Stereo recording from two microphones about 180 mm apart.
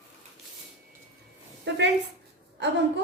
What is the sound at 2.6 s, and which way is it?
Speech, 75° right (ahead or behind).